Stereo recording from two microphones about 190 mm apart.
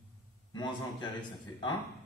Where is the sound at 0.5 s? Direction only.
25° left (ahead or behind).